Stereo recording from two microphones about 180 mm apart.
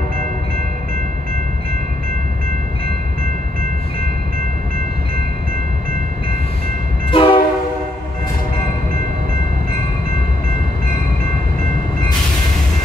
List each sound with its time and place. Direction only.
7.1 s train: 30° left (ahead or behind)